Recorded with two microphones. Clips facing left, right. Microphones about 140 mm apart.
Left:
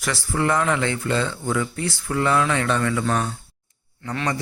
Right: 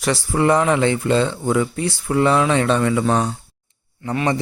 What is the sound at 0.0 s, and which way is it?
Speech, 20° right (ahead or behind).